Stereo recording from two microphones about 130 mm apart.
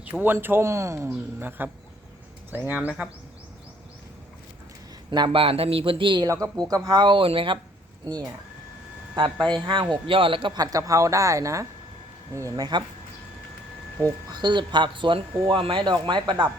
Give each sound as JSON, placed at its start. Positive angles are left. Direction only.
{"t": 0.0, "sound": "speech", "side_deg": -15}
{"t": 5.1, "sound": "a man's voice", "side_deg": -40}
{"t": 8.0, "sound": "speech", "side_deg": -25}
{"t": 9.6, "sound": "a man's voice", "side_deg": -35}
{"t": 14.3, "sound": "a man's voice", "side_deg": -35}